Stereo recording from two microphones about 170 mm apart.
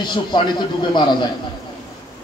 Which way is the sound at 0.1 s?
25° left (ahead or behind).